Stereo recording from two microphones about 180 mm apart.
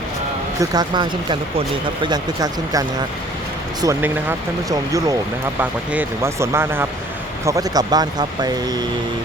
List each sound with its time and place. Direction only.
0.6 s speech: 20° right (ahead or behind)